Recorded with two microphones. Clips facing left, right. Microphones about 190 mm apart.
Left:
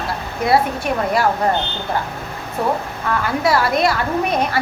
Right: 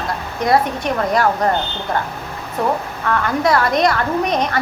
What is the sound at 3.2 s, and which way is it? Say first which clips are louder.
A woman's voice: right 1 dB; 5° left (ahead or behind).